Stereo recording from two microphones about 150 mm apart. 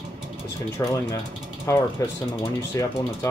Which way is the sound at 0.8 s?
15° left (ahead or behind).